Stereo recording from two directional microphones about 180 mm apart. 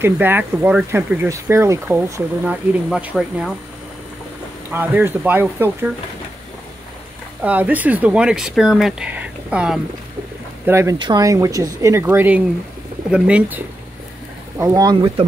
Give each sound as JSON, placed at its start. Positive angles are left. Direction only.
{"t": 0.0, "sound": "speech", "side_deg": -10}
{"t": 4.6, "sound": "speech", "side_deg": -10}
{"t": 7.4, "sound": "speech", "side_deg": -10}
{"t": 14.6, "sound": "speech", "side_deg": -20}